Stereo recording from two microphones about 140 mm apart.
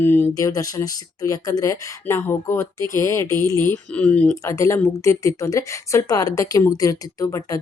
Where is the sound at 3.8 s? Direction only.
10° left (ahead or behind).